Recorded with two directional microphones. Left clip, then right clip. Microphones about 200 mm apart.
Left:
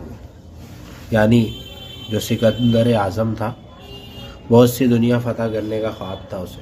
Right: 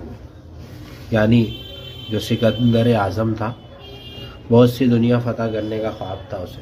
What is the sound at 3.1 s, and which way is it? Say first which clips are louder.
A man's voice: even; 15° left (ahead or behind).